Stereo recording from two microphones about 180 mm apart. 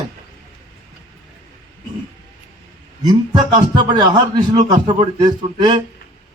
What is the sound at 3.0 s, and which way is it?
A man's voice, 25° right (ahead or behind).